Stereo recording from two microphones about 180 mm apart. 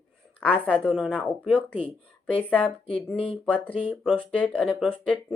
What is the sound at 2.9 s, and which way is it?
Speech, 5° left (ahead or behind).